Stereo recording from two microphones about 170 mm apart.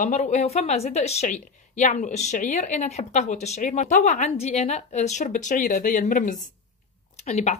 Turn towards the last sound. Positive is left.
turn(degrees=40)  # may be behind; listen again after turning